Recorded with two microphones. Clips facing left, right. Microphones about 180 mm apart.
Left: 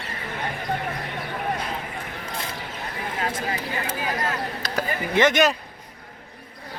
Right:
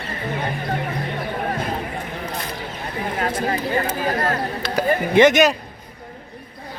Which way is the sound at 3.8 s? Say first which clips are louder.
Right 5 dB; 50° right (ahead or behind).